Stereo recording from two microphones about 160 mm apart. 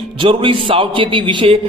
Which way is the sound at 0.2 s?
30° right (ahead or behind).